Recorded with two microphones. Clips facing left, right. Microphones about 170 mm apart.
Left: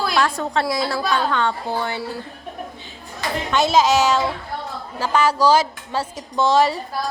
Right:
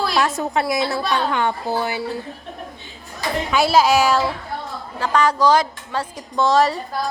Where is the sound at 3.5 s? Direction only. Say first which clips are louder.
Right 1 dB; 10° right (ahead or behind).